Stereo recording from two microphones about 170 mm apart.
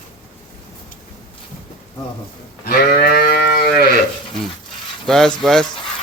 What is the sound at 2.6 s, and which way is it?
Sheep, 65° left (ahead or behind).